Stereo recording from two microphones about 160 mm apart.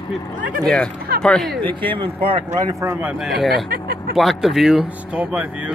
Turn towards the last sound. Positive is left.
turn(degrees=-5)  # may be behind; listen again after turning